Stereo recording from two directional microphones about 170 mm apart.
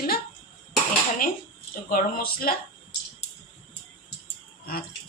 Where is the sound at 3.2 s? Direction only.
40° left (ahead or behind).